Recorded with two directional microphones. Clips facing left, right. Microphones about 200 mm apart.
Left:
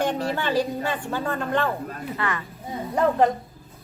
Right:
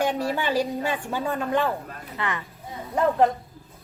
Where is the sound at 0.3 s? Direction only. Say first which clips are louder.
Left 1 dB; 10° right (ahead or behind).